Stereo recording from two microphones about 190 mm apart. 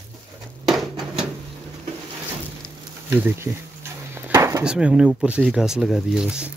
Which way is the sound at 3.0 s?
10° right (ahead or behind).